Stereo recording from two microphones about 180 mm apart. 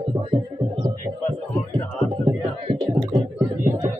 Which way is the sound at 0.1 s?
25° right (ahead or behind).